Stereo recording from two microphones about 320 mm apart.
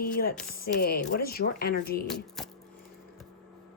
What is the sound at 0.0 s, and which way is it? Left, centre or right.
A woman's voice, left.